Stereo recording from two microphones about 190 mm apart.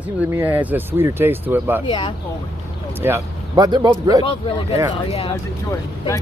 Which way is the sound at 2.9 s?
15° right (ahead or behind).